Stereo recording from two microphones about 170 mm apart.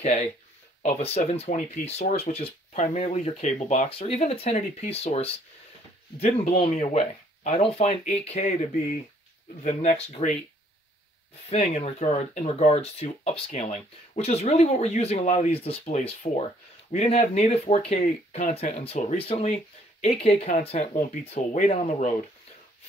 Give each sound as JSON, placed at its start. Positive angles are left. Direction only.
{"t": 0.8, "sound": "speech", "side_deg": 40}
{"t": 11.5, "sound": "speech", "side_deg": 35}